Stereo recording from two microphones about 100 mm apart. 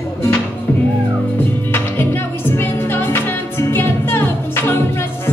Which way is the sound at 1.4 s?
20° left (ahead or behind).